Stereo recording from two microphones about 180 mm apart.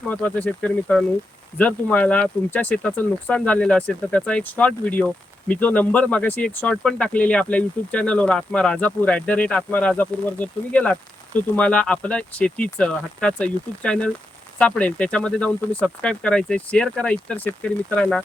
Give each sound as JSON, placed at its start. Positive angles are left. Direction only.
{"t": 0.1, "sound": "speech", "side_deg": 10}